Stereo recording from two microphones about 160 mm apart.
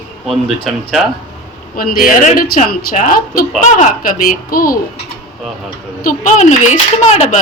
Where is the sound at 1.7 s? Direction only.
65° left (ahead or behind).